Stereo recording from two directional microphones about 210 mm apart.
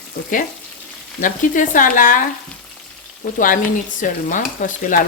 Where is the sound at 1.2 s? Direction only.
40° left (ahead or behind).